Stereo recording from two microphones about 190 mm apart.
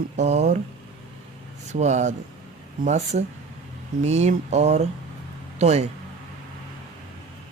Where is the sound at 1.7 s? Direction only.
35° right (ahead or behind).